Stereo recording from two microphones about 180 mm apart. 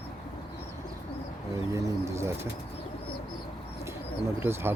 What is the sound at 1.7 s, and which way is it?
Speech, 15° right (ahead or behind).